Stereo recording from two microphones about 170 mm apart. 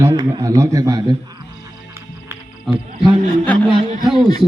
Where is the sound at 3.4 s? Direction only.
10° left (ahead or behind).